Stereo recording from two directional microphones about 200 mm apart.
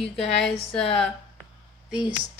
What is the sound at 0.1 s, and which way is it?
Speech, 5° left (ahead or behind).